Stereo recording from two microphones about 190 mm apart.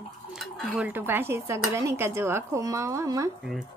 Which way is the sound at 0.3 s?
Centre (ahead or behind).